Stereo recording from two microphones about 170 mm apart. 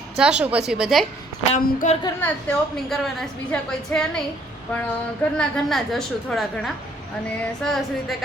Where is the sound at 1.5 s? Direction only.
50° left (ahead or behind).